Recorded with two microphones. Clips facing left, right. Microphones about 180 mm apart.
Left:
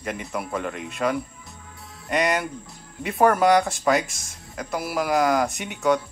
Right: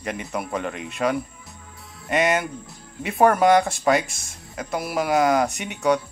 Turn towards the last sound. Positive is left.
turn(degrees=0)  # may be behind; listen again after turning